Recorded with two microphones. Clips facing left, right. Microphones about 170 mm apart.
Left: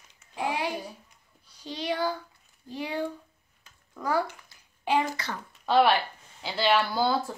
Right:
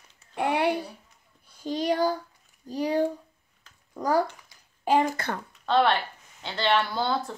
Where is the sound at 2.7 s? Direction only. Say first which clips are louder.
Right 7 dB; 40° right (ahead or behind).